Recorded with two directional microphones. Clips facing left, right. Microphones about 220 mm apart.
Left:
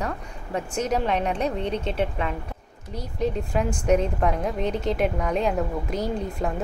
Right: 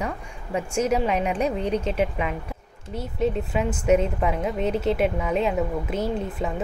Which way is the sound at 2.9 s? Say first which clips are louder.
Right 2 dB; 5° right (ahead or behind).